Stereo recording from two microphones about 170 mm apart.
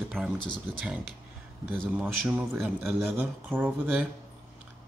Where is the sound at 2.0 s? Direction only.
5° right (ahead or behind).